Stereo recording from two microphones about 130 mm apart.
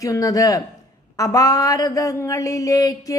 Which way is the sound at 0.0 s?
25° left (ahead or behind).